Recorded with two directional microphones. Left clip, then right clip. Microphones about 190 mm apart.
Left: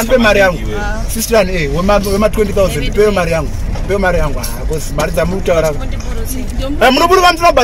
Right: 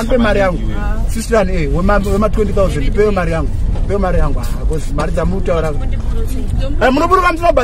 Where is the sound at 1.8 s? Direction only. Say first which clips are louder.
Left 3 dB; 20° left (ahead or behind).